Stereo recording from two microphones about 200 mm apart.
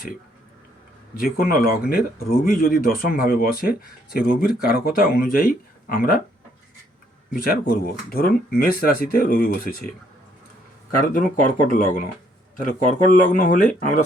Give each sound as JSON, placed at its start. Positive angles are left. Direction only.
{"t": 1.1, "sound": "speech", "side_deg": 45}
{"t": 7.3, "sound": "speech", "side_deg": 45}
{"t": 10.9, "sound": "speech", "side_deg": 40}
{"t": 12.5, "sound": "speech", "side_deg": 40}